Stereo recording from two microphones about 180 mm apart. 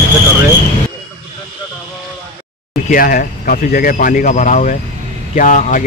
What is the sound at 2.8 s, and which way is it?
Speech, 50° left (ahead or behind).